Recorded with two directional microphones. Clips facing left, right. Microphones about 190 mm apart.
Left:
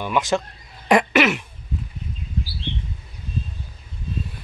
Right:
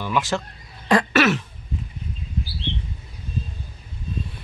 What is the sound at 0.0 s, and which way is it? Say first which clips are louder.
Speech: left 2 dB; 20° left (ahead or behind).